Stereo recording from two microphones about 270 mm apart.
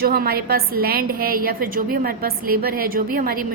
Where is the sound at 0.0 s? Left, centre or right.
Right.